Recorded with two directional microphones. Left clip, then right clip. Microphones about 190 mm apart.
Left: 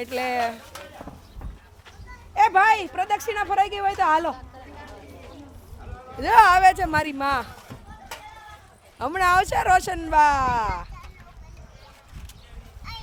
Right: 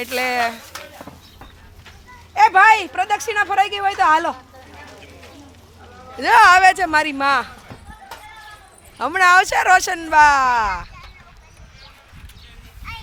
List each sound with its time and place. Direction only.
0.0 s speech: 20° right (ahead or behind)
2.3 s speech: 20° right (ahead or behind)
6.1 s speech: 25° right (ahead or behind)
9.0 s speech: 20° right (ahead or behind)